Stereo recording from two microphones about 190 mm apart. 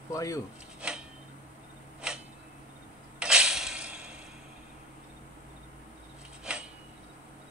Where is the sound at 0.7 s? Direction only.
5° right (ahead or behind).